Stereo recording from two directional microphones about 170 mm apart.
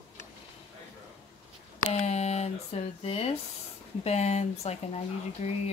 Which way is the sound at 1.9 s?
40° left (ahead or behind).